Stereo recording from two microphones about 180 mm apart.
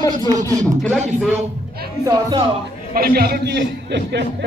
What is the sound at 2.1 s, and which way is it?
Speech, 25° right (ahead or behind).